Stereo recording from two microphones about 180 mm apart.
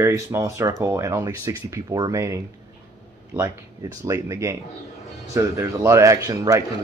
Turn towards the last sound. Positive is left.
turn(degrees=-20)  # may be behind; listen again after turning